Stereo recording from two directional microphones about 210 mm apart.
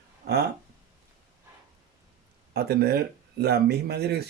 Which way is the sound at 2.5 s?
50° right (ahead or behind).